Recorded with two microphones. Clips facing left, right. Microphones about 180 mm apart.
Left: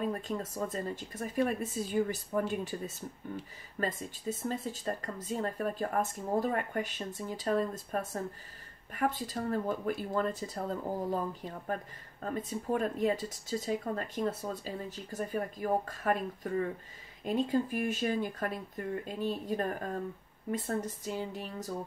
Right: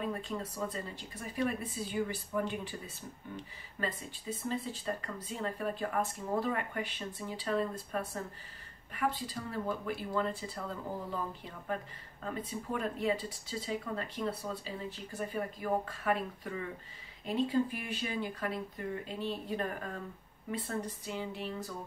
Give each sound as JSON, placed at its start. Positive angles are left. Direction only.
{"t": 0.2, "sound": "speech", "side_deg": 45}